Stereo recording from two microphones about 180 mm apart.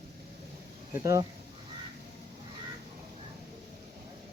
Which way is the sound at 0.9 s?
15° right (ahead or behind).